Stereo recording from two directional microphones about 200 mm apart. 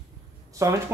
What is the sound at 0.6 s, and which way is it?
Speech, 15° right (ahead or behind).